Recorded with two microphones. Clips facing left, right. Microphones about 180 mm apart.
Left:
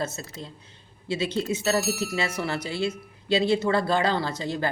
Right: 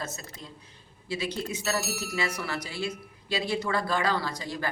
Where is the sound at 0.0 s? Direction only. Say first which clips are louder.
Left 6 dB; 30° left (ahead or behind).